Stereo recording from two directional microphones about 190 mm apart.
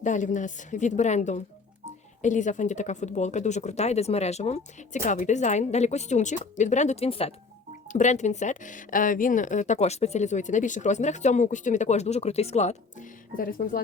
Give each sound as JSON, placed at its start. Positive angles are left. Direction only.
{"t": 0.0, "sound": "speech", "side_deg": 40}